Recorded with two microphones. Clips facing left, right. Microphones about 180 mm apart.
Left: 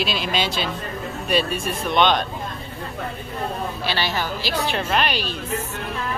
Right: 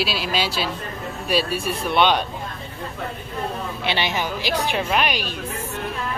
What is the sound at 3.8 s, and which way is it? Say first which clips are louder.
Speech: right 2 dB; 20° right (ahead or behind).